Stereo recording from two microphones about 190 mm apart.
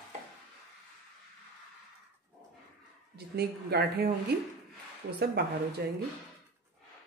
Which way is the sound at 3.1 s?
55° right (ahead or behind).